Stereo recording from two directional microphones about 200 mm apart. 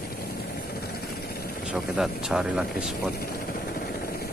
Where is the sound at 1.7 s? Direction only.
5° right (ahead or behind).